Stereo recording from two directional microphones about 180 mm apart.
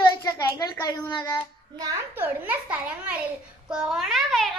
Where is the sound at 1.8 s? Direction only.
15° right (ahead or behind).